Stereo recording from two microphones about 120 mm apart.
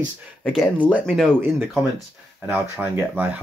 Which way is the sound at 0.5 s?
5° right (ahead or behind).